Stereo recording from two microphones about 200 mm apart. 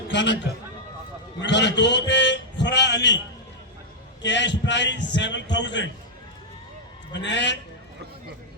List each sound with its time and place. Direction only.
0.1 s a man's voice: 60° left (ahead or behind)
1.4 s a man's voice: 60° left (ahead or behind)
4.2 s a man's voice: 60° left (ahead or behind)
7.1 s a man's voice: 60° left (ahead or behind)